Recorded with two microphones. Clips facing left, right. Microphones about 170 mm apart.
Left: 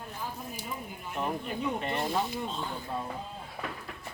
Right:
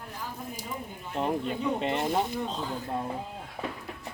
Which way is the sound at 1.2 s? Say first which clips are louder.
Right 4 dB; 30° right (ahead or behind).